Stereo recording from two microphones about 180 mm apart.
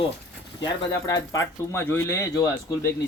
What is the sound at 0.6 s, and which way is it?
Speech, 20° left (ahead or behind).